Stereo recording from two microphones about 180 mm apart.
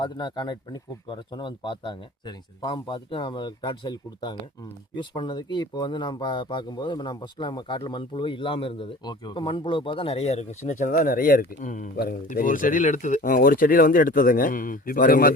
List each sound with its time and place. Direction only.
0.0 s speech: 25° left (ahead or behind); by 15.3 s 50° left (ahead or behind)